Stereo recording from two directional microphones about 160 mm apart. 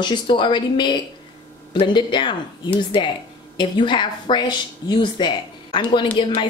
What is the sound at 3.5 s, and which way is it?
Speech, 30° left (ahead or behind).